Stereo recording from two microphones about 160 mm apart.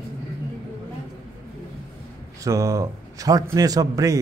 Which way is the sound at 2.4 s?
20° right (ahead or behind).